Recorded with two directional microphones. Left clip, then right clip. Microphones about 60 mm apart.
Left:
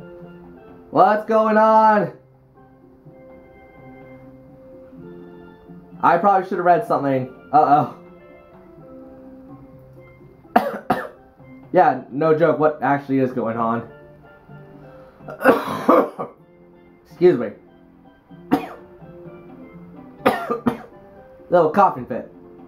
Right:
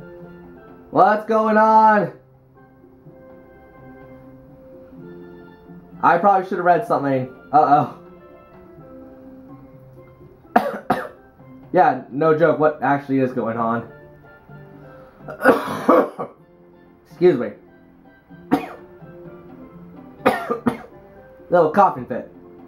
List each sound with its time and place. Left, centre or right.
0.7 s speech: centre
5.9 s speech: centre
10.5 s cough: centre
11.7 s speech: centre
14.8 s throat clearing: centre
17.2 s speech: centre
18.5 s music: centre
20.2 s cough: centre
21.5 s speech: centre